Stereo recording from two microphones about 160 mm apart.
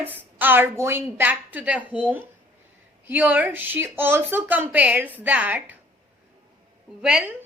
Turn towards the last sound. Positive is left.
turn(degrees=-5)  # may be behind; listen again after turning